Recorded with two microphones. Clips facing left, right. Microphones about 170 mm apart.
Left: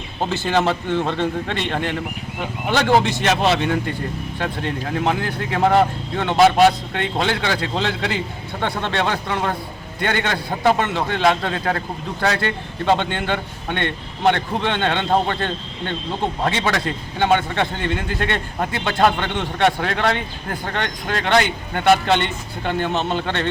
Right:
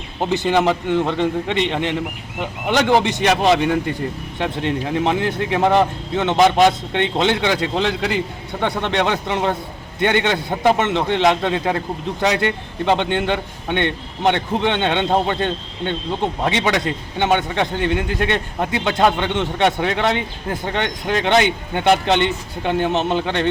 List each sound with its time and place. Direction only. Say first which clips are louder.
0.3 s a man's voice: right 3 dB; 15° right (ahead or behind)